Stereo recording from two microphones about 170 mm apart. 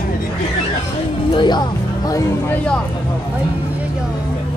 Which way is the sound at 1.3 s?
25° left (ahead or behind).